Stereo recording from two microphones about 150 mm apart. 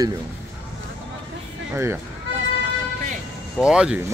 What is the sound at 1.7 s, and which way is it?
Speech, 15° right (ahead or behind).